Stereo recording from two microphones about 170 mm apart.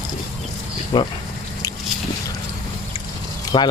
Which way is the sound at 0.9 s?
25° left (ahead or behind).